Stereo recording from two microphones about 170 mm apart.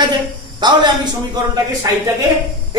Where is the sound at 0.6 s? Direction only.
25° right (ahead or behind).